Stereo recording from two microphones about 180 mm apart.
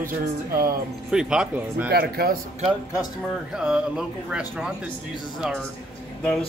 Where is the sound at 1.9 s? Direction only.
55° right (ahead or behind).